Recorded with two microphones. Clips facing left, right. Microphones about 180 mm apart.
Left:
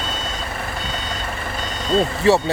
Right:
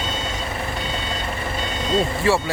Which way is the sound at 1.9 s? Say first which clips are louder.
Left 4 dB; 25° left (ahead or behind).